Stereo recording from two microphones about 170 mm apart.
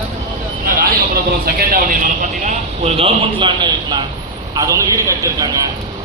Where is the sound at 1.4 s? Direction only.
55° right (ahead or behind); by 5.6 s 20° right (ahead or behind).